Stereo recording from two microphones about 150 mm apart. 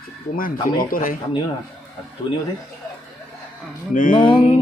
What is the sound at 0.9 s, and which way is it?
Speech, 65° left (ahead or behind).